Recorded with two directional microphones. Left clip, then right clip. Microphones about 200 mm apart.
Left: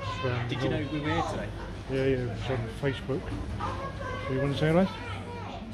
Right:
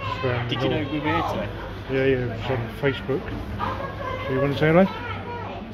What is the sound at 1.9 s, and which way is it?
Speech, centre (ahead or behind).